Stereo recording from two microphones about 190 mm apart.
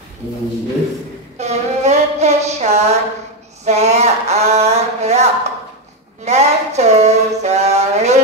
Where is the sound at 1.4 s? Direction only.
35° right (ahead or behind).